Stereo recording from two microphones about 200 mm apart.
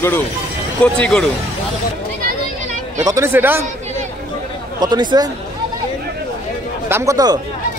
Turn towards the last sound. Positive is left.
turn(degrees=-15)  # may be behind; listen again after turning